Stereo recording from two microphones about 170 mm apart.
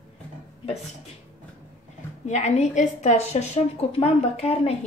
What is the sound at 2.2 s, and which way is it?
A woman's voice, 40° left (ahead or behind).